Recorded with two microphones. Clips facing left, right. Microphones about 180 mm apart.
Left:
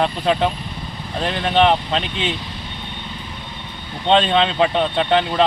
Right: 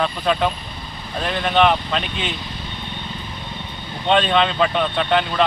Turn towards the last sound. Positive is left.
turn(degrees=25)  # may be behind; listen again after turning